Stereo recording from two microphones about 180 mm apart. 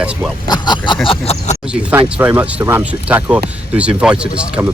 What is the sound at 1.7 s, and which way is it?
Speech, 10° right (ahead or behind).